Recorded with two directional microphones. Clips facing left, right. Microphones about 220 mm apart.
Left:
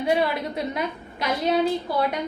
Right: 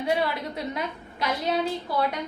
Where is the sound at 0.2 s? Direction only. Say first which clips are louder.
Left 4 dB; 15° left (ahead or behind).